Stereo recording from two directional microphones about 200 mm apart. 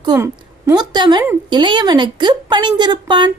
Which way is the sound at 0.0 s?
15° right (ahead or behind).